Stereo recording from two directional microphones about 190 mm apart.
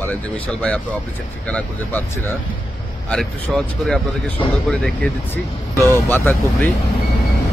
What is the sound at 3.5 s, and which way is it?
Speech, centre (ahead or behind).